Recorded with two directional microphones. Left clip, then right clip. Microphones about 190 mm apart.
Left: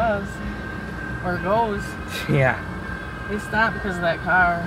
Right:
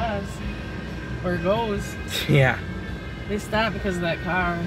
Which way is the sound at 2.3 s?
15° right (ahead or behind).